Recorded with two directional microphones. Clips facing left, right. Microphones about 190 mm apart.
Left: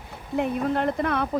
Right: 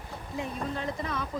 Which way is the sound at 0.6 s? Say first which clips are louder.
Left 9 dB; 65° left (ahead or behind).